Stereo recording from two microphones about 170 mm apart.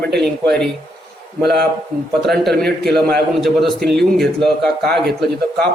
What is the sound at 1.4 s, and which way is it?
Speech, 70° right (ahead or behind).